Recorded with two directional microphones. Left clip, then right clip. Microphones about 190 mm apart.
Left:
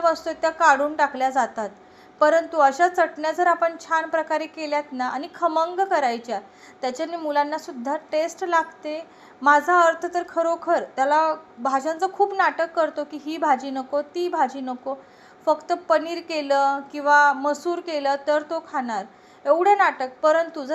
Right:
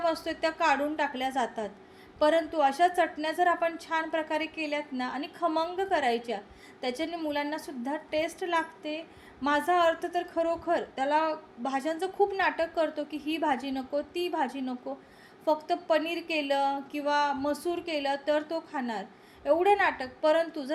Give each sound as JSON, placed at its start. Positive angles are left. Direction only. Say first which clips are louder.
{"t": 0.0, "sound": "a woman's voice", "louder": "left 7 dB", "side_deg": 0}